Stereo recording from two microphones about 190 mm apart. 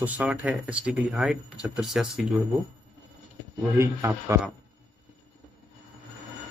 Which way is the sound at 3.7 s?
15° right (ahead or behind).